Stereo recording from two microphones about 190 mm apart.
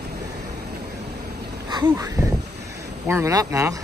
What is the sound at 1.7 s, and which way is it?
Speech, 20° right (ahead or behind).